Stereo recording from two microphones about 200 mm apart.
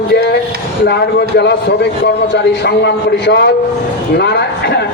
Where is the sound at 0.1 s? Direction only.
55° left (ahead or behind).